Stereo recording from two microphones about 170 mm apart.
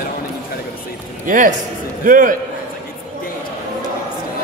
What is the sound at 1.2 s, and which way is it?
A man's voice, 50° right (ahead or behind).